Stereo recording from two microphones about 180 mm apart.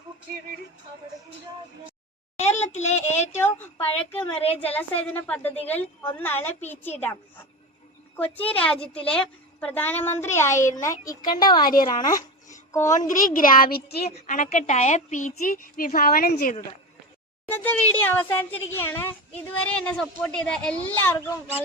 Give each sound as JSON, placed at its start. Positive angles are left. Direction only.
{"t": 2.3, "sound": "a child's voice", "side_deg": 40}
{"t": 3.4, "sound": "a woman's voice", "side_deg": 10}
{"t": 12.0, "sound": "a sound", "side_deg": 20}
{"t": 13.1, "sound": "a woman's voice", "side_deg": 50}
{"t": 14.2, "sound": "a woman's voice", "side_deg": 45}
{"t": 17.5, "sound": "speech", "side_deg": 10}